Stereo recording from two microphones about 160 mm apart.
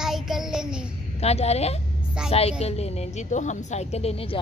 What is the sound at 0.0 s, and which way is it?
Child singing, 5° right (ahead or behind).